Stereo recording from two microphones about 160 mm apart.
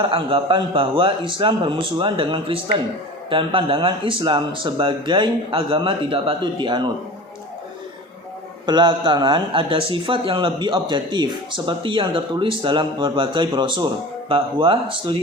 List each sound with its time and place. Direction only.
0.0 s speech: 35° right (ahead or behind)
8.6 s speech: 30° right (ahead or behind)